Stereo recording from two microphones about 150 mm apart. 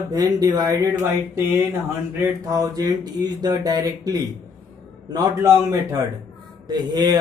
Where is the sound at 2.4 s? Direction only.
25° right (ahead or behind).